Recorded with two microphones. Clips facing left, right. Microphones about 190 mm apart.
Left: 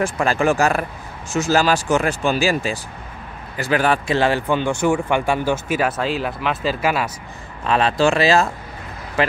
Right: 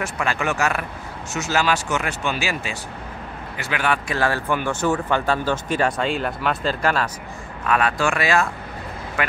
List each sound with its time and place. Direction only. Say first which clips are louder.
0.0 s speech: left 6 dB; 35° left (ahead or behind)
4.2 s speech: left 4 dB; 20° left (ahead or behind)
7.6 s speech: left 4 dB; 25° left (ahead or behind)